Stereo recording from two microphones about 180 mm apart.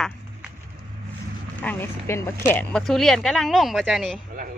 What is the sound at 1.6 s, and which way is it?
Speech, 10° left (ahead or behind).